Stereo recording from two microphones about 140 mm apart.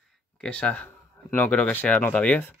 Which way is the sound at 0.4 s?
10° left (ahead or behind).